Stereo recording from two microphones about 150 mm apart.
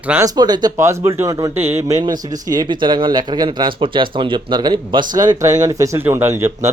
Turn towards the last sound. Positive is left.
turn(degrees=-15)  # may be behind; listen again after turning